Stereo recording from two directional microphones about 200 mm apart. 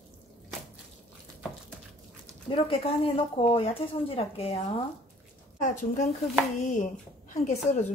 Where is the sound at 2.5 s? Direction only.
25° left (ahead or behind).